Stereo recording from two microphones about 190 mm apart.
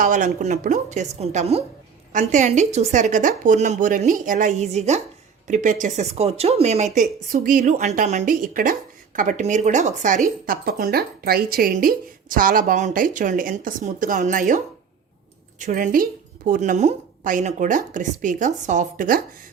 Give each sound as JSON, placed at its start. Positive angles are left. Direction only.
{"t": 0.0, "sound": "a woman's voice", "side_deg": -45}